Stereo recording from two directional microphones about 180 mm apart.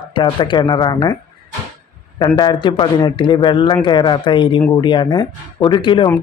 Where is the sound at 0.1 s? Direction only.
25° left (ahead or behind).